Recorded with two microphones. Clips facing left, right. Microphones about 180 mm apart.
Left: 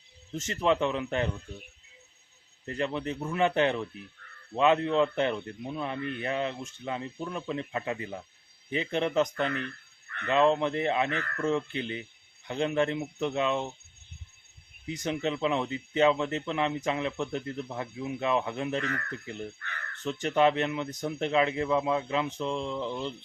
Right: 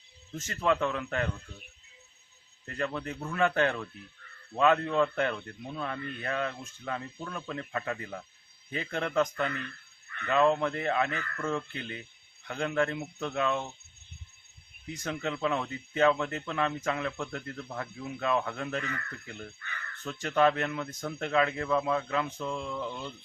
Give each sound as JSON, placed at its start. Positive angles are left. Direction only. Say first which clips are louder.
{"t": 0.3, "sound": "speech", "louder": "left 2 dB", "side_deg": 20}
{"t": 2.6, "sound": "speech", "louder": "left 3 dB", "side_deg": 20}
{"t": 10.2, "sound": "speech", "louder": "left 1 dB", "side_deg": 20}
{"t": 14.8, "sound": "speech", "louder": "left 4 dB", "side_deg": 20}
{"t": 20.1, "sound": "speech", "louder": "left 1 dB", "side_deg": 20}